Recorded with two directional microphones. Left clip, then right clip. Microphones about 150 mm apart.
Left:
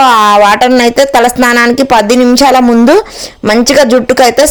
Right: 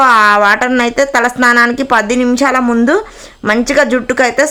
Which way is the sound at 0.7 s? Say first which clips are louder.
Left 5 dB; 40° left (ahead or behind).